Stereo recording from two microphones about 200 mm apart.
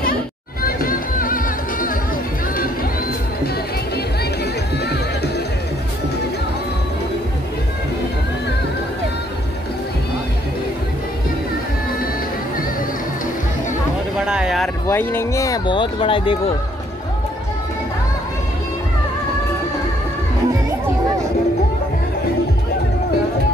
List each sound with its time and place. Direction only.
0.0 s music: 45° left (ahead or behind)
14.1 s a sound: 5° right (ahead or behind)
14.9 s speech: 10° left (ahead or behind)